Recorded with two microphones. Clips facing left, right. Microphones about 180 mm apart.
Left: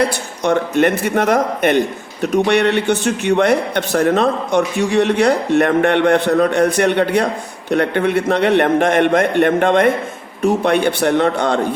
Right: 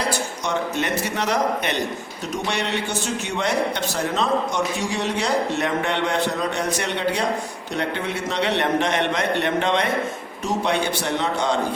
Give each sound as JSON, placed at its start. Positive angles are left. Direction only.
{"t": 0.0, "sound": "a man's voice", "side_deg": 60}